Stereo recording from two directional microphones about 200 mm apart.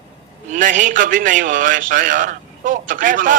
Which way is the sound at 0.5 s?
40° right (ahead or behind).